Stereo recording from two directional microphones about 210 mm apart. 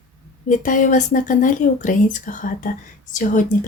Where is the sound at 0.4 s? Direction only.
40° left (ahead or behind).